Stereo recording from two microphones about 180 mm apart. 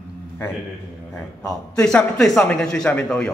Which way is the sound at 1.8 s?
5° left (ahead or behind).